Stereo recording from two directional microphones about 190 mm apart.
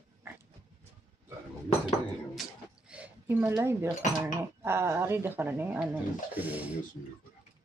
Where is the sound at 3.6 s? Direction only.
15° right (ahead or behind).